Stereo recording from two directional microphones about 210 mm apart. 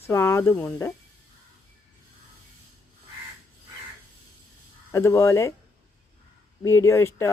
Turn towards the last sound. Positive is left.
turn(degrees=15)  # may be behind; listen again after turning